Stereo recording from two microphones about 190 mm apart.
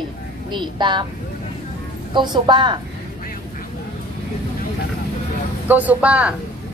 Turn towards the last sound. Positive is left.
turn(degrees=-5)  # may be behind; listen again after turning